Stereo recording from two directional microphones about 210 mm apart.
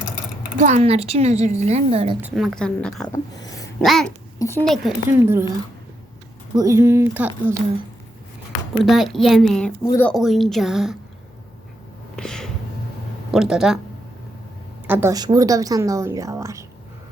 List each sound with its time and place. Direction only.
0.6 s a woman's voice: 30° right (ahead or behind)
2.2 s a woman's voice: centre (ahead or behind)
4.4 s speech: 10° left (ahead or behind)
5.0 s a woman's voice: 10° right (ahead or behind)
6.6 s a woman's voice: 15° right (ahead or behind)
8.8 s a woman's voice: centre (ahead or behind)
9.8 s a woman's voice: 15° left (ahead or behind)
10.1 s a woman's voice: centre (ahead or behind)
12.1 s a sound: 5° left (ahead or behind)
13.3 s a woman's voice: centre (ahead or behind)
14.8 s a woman's voice: 10° right (ahead or behind)